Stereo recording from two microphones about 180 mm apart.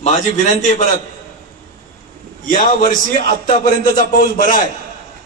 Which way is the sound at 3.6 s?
50° left (ahead or behind).